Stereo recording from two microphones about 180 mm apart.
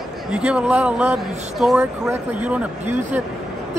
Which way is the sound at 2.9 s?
40° right (ahead or behind).